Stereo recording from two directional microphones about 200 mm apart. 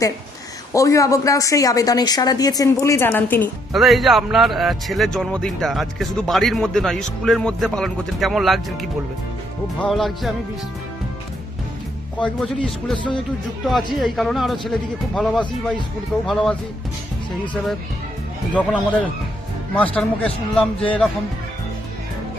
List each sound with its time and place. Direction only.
0.7 s speech: 15° left (ahead or behind)
12.2 s speech: 5° left (ahead or behind)
19.7 s speech: 5° left (ahead or behind)